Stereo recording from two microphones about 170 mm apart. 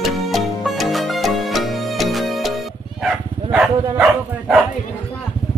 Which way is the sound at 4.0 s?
5° right (ahead or behind).